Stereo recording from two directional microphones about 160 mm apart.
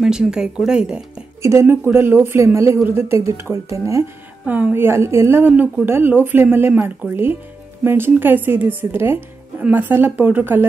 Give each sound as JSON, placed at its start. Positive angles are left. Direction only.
{"t": 0.0, "sound": "speech", "side_deg": -5}
{"t": 1.4, "sound": "speech", "side_deg": -15}